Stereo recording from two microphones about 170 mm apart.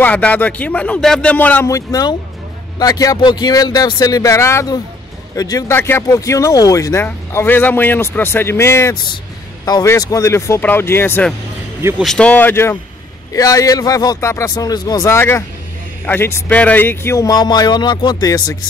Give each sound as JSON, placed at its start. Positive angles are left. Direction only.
{"t": 0.0, "sound": "a man's voice", "side_deg": 10}